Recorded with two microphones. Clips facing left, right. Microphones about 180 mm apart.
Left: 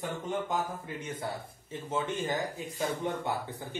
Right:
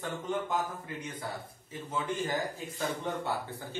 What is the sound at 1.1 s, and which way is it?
A man's voice, 25° left (ahead or behind).